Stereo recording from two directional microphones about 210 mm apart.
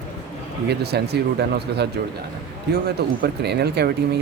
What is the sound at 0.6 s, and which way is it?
Speech, 50° right (ahead or behind).